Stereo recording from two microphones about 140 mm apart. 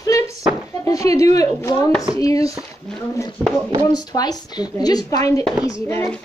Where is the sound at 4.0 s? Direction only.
30° left (ahead or behind).